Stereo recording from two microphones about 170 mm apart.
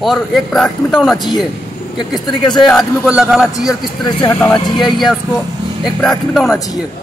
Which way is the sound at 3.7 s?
25° left (ahead or behind).